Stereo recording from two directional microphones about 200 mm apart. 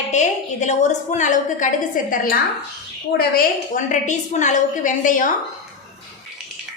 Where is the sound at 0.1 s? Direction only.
35° left (ahead or behind).